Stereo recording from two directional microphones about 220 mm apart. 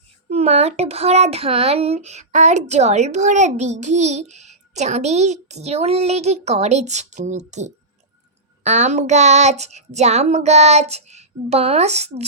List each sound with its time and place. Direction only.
0.3 s a child's voice: 30° right (ahead or behind)